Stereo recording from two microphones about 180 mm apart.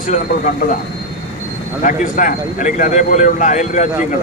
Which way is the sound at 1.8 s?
45° left (ahead or behind).